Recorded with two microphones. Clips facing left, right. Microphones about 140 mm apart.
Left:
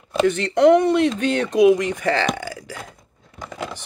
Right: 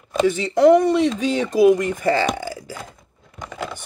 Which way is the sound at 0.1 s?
Centre (ahead or behind).